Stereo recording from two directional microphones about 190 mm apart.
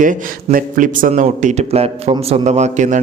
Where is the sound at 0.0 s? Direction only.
45° right (ahead or behind).